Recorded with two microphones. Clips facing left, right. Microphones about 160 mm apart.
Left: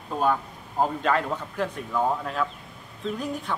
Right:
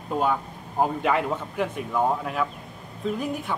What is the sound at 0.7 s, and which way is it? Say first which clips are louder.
Speech: right 1 dB; 15° right (ahead or behind).